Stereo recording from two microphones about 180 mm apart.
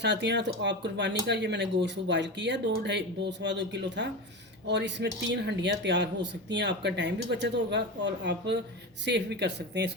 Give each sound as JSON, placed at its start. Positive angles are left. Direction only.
{"t": 0.0, "sound": "speech", "side_deg": -70}